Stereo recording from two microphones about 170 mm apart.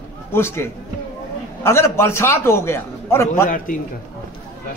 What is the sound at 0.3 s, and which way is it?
A man's voice, 15° left (ahead or behind).